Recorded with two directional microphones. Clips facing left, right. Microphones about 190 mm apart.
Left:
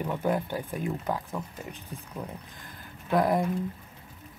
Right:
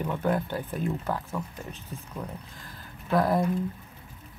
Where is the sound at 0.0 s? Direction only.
10° left (ahead or behind).